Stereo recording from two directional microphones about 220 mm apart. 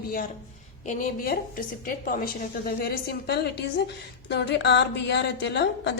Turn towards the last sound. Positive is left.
turn(degrees=50)  # may be behind; listen again after turning